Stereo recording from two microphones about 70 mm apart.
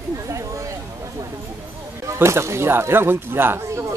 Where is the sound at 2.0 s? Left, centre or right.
Right.